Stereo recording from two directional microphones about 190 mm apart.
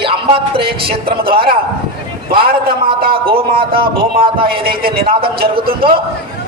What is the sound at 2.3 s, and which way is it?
Speech, 55° right (ahead or behind).